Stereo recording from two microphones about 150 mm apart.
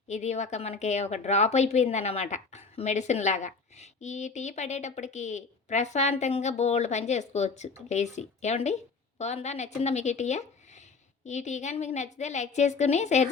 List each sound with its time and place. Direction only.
0.1 s a woman's voice: 50° left (ahead or behind)